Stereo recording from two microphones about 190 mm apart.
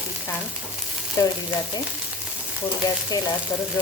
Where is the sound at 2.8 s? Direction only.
20° left (ahead or behind).